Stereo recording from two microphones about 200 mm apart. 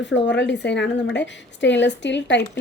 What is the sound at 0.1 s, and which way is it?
A woman's voice, 60° left (ahead or behind).